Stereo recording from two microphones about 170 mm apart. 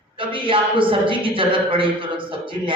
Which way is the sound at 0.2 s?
30° right (ahead or behind).